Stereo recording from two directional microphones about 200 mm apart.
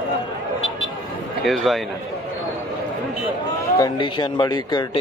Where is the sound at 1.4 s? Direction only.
Centre (ahead or behind).